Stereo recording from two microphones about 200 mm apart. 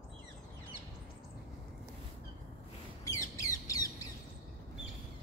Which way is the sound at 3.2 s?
15° left (ahead or behind).